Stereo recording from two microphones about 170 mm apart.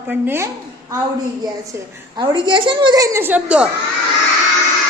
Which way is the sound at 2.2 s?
30° right (ahead or behind).